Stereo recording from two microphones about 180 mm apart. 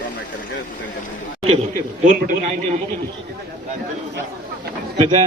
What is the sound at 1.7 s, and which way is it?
Speech, 50° right (ahead or behind).